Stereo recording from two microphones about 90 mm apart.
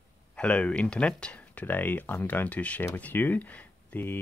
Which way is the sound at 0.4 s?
10° left (ahead or behind).